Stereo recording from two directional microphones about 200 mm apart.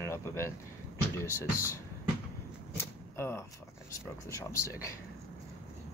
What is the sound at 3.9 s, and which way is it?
Speech, 15° left (ahead or behind).